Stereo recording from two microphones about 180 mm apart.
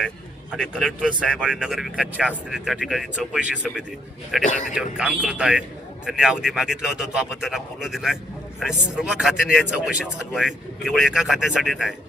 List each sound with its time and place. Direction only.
0.7 s speech: centre (ahead or behind)
4.4 s speech: 45° left (ahead or behind)
4.9 s speech: 5° right (ahead or behind)